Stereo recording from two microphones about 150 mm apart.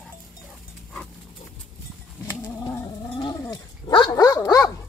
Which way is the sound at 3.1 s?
25° left (ahead or behind).